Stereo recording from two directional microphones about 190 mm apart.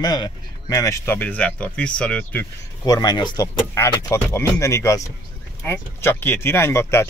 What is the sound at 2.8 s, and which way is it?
Speech, 20° left (ahead or behind).